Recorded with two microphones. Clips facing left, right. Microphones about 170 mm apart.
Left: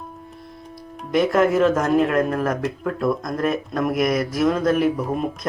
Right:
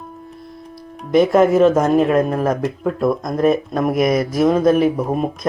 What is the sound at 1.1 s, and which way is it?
Speech, 20° right (ahead or behind).